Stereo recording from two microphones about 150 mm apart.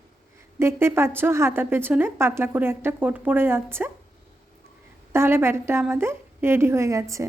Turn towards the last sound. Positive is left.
turn(degrees=-20)  # may be behind; listen again after turning